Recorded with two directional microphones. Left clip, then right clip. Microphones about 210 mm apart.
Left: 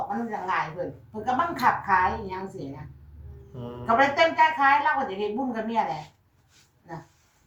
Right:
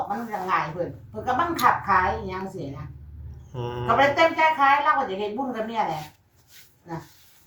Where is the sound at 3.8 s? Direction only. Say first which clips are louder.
Right 2 dB; centre (ahead or behind).